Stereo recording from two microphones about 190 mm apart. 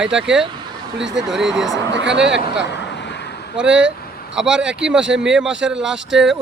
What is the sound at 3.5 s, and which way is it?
Speech, 5° right (ahead or behind).